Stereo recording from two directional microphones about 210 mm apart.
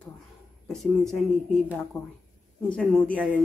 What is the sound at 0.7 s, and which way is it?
Speech, centre (ahead or behind).